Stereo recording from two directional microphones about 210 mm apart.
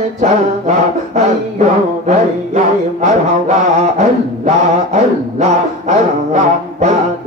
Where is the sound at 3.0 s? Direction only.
35° right (ahead or behind).